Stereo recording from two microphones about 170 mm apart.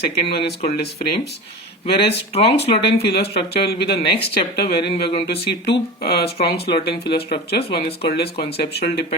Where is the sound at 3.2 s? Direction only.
70° left (ahead or behind).